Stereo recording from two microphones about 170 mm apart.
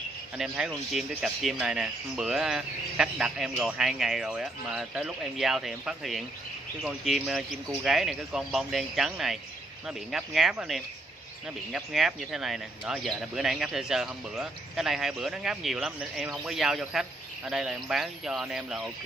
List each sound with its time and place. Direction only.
0.4 s speech: centre (ahead or behind)